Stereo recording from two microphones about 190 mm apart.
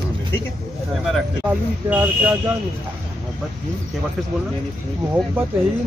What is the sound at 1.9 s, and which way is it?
Speech, 10° right (ahead or behind).